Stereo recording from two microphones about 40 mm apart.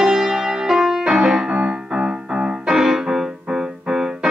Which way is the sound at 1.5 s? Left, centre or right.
Right.